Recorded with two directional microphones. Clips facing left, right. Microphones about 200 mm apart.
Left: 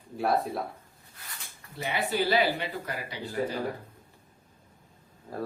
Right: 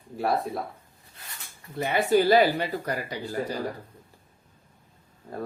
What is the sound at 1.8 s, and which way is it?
Speech, 50° right (ahead or behind).